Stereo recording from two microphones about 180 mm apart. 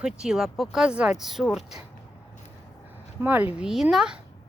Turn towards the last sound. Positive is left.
turn(degrees=-5)  # may be behind; listen again after turning